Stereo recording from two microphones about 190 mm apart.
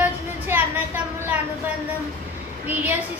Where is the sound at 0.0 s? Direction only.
10° right (ahead or behind).